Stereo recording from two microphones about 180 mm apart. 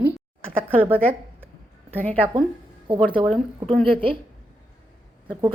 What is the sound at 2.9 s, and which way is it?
Speech, 25° right (ahead or behind).